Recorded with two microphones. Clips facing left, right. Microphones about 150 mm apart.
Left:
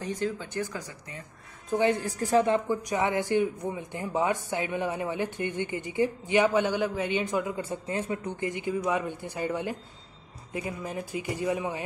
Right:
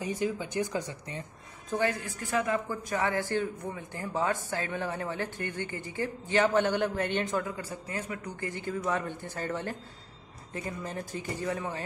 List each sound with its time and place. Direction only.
0.0 s speech: 10° right (ahead or behind)
1.7 s a woman's voice: 20° left (ahead or behind)
2.0 s speech: 35° left (ahead or behind); by 11.8 s 15° left (ahead or behind)